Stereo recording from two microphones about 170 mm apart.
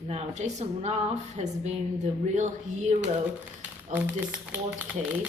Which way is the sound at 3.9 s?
10° right (ahead or behind).